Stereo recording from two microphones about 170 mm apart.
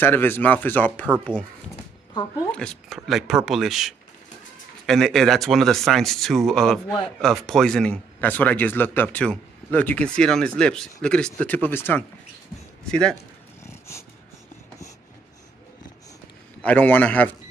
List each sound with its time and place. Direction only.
0.0 s speech: 10° left (ahead or behind)
2.5 s speech: centre (ahead or behind)
13.7 s dog: 15° left (ahead or behind)
16.6 s speech: 10° left (ahead or behind)